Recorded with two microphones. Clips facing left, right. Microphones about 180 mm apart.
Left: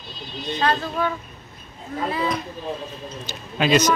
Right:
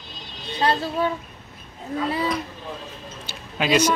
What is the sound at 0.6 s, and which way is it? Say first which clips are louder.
Speech: right 1 dB; 35° right (ahead or behind).